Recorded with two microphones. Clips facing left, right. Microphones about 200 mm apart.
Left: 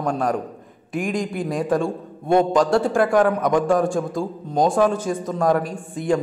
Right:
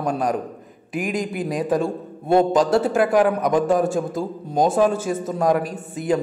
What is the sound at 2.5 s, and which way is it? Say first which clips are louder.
A man's voice: even; 20° right (ahead or behind).